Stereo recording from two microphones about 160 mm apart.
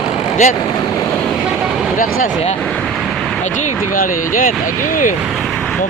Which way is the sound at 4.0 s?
60° left (ahead or behind).